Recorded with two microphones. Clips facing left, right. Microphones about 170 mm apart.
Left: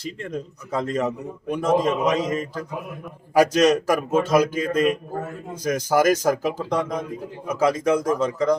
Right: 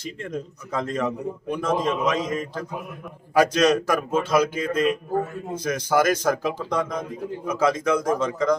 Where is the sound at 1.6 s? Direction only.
40° left (ahead or behind).